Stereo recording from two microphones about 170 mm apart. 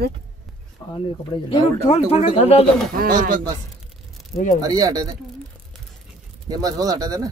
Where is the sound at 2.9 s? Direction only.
55° right (ahead or behind).